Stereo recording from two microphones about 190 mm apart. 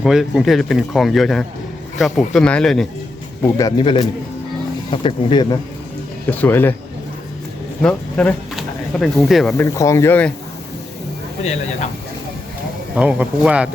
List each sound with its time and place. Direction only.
0.0 s speech: centre (ahead or behind)
3.4 s speech: 20° left (ahead or behind)
6.4 s speech: 10° left (ahead or behind)
7.8 s speech: 5° left (ahead or behind)
9.6 s speech: 15° left (ahead or behind)
13.0 s speech: 5° right (ahead or behind)